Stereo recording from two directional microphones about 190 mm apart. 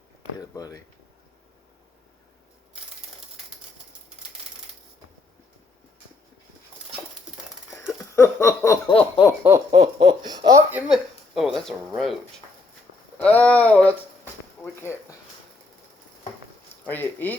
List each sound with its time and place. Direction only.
0.3 s speech: 20° left (ahead or behind)
7.7 s wheeze: centre (ahead or behind)
8.1 s speech: 15° left (ahead or behind)
8.9 s speech: 25° left (ahead or behind)
9.7 s laughter: 30° right (ahead or behind)
10.7 s speech: 5° right (ahead or behind)
13.1 s speech: 10° left (ahead or behind)
16.9 s speech: 10° left (ahead or behind)